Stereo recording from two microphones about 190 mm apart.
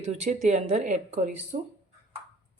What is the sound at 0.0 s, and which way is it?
A woman's voice, 40° right (ahead or behind).